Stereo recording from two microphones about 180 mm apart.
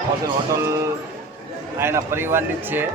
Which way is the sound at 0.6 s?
15° right (ahead or behind).